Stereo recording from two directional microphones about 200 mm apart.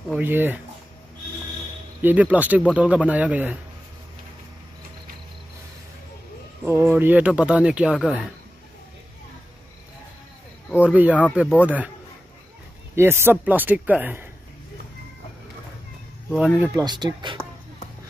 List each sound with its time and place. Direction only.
0.1 s speech: 10° right (ahead or behind)
2.0 s speech: 10° right (ahead or behind)
6.6 s speech: 10° right (ahead or behind)
10.7 s speech: 5° right (ahead or behind)
12.9 s speech: 10° right (ahead or behind)
16.3 s speech: 5° right (ahead or behind)
16.7 s speech: 20° right (ahead or behind)